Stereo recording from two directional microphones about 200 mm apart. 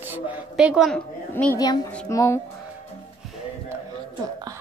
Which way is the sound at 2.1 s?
15° left (ahead or behind).